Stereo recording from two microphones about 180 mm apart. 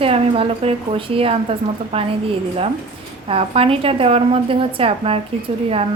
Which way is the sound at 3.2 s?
30° right (ahead or behind).